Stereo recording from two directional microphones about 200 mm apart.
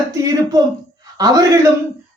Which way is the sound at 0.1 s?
15° right (ahead or behind).